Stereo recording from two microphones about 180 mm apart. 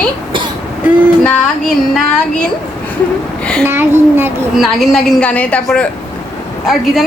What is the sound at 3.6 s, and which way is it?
A child's voice, 15° right (ahead or behind).